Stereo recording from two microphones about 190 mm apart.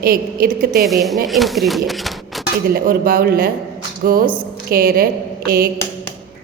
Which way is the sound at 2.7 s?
50° right (ahead or behind).